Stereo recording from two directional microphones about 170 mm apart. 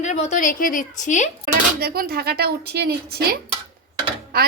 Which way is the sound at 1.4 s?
65° right (ahead or behind).